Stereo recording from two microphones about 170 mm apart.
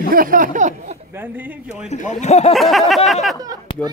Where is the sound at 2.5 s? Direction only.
Centre (ahead or behind).